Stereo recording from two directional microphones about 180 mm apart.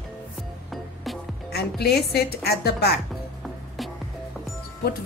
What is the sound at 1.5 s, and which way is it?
Speech, 60° left (ahead or behind).